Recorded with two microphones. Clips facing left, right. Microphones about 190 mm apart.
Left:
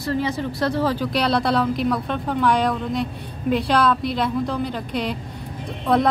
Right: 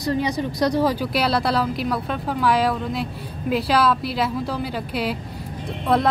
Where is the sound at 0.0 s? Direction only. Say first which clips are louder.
Right 1 dB; 15° right (ahead or behind).